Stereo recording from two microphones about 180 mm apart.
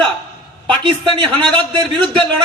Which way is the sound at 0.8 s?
25° right (ahead or behind).